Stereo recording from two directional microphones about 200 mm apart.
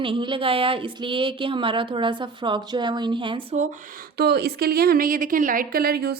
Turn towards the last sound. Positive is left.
turn(degrees=-50)  # may be behind; listen again after turning